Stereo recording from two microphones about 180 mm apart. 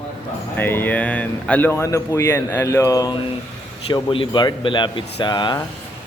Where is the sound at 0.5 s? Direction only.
10° left (ahead or behind).